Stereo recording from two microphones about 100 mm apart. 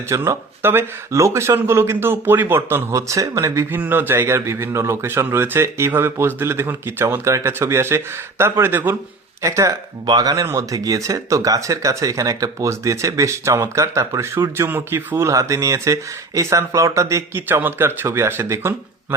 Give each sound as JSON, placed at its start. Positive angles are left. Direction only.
{"t": 0.1, "sound": "speech", "side_deg": -25}
{"t": 9.4, "sound": "speech", "side_deg": -35}